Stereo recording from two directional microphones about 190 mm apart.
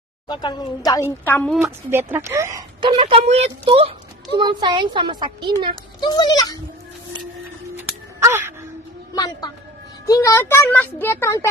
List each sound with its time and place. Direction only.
0.3 s a woman's voice: 25° left (ahead or behind); by 1.7 s 5° left (ahead or behind)
1.9 s speech: 10° right (ahead or behind)
3.0 s a woman's voice: 30° right (ahead or behind)
5.9 s a child's voice: 20° left (ahead or behind)
7.7 s music: 10° right (ahead or behind)
9.1 s a woman's voice: 20° left (ahead or behind)